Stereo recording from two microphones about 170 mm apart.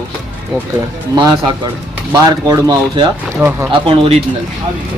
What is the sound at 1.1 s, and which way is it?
Speech, 25° right (ahead or behind).